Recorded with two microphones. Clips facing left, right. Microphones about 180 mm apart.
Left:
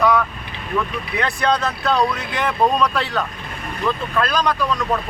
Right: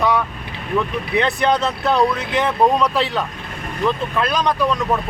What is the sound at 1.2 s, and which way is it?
Speech, 25° right (ahead or behind).